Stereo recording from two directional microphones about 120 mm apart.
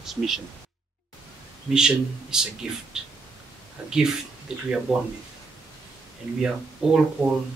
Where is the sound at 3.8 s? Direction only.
5° right (ahead or behind).